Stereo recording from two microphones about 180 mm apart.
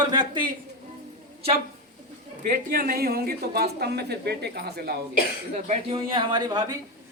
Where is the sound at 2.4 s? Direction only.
50° right (ahead or behind).